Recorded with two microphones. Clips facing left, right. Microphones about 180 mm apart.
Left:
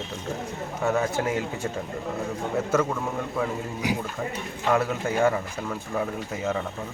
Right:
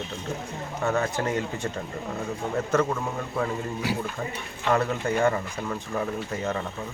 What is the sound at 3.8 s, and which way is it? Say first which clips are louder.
Speech: left 2 dB; 15° left (ahead or behind).